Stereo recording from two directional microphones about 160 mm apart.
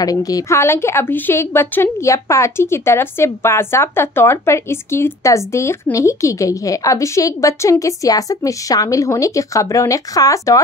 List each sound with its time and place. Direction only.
0.0 s a woman's voice: 20° left (ahead or behind)